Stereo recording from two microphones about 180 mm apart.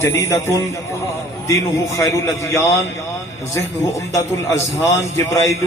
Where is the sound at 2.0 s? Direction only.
15° left (ahead or behind).